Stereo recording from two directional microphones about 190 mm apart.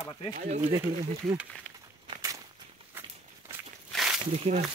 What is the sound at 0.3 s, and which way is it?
Speech, 40° right (ahead or behind).